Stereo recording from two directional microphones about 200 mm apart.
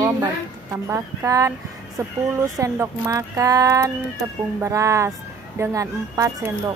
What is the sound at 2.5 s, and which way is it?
Speech, 15° right (ahead or behind).